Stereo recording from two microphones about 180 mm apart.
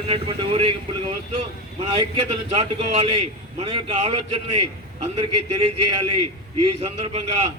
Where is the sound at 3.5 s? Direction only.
30° right (ahead or behind).